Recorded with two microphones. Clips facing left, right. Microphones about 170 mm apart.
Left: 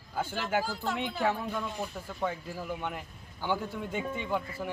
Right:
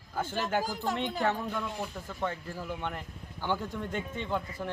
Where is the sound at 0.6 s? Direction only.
15° right (ahead or behind).